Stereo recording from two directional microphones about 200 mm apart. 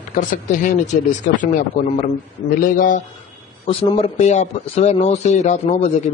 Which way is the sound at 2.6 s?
40° left (ahead or behind).